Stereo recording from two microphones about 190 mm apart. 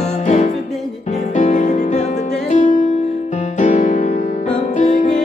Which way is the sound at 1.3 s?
40° left (ahead or behind).